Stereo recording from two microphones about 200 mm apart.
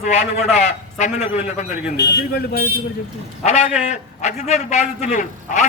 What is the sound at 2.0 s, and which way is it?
Speech, 55° left (ahead or behind).